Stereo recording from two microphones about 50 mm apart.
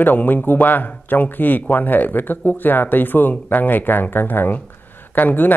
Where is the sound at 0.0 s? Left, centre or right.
Left.